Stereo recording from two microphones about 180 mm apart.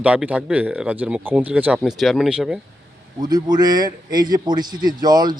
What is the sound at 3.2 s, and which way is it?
A man's voice, 20° right (ahead or behind).